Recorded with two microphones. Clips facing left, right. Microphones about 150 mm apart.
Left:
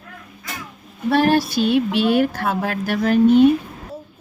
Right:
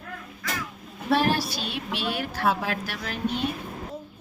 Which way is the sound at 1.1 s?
55° left (ahead or behind).